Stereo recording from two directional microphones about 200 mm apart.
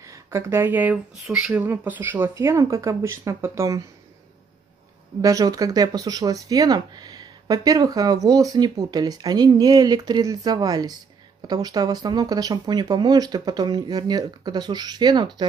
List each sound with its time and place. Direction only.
0.0 s speech: 15° right (ahead or behind)
5.2 s speech: 15° right (ahead or behind)